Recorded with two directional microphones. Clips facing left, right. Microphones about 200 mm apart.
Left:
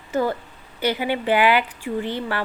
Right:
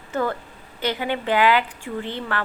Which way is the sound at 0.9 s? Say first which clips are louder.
Left 2 dB; 10° left (ahead or behind).